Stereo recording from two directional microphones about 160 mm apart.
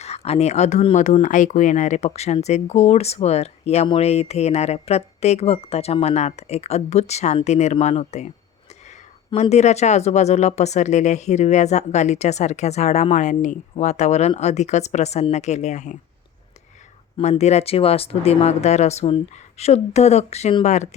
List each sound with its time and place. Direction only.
0.0 s speech: 40° left (ahead or behind)
17.2 s speech: 40° left (ahead or behind)